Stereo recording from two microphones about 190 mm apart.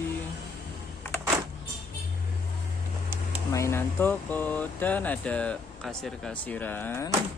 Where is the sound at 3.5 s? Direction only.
15° left (ahead or behind).